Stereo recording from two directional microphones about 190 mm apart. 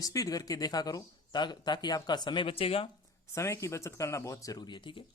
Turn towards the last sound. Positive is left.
turn(degrees=25)  # may be behind; listen again after turning